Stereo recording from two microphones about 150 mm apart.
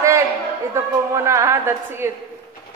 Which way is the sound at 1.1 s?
20° right (ahead or behind).